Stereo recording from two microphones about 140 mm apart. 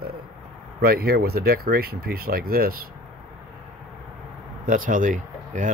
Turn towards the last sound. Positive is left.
turn(degrees=-65)  # may be behind; listen again after turning